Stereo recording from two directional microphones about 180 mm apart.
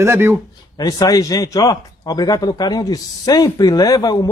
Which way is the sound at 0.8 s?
20° left (ahead or behind).